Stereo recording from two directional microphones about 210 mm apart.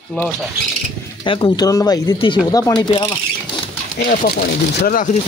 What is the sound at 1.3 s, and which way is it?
Speech, 20° left (ahead or behind).